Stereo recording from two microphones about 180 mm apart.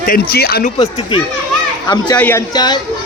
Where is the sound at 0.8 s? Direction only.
30° left (ahead or behind).